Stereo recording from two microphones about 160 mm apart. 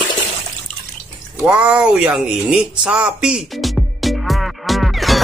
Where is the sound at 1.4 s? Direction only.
5° right (ahead or behind).